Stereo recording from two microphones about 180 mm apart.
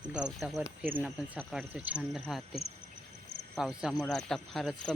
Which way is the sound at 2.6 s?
60° left (ahead or behind).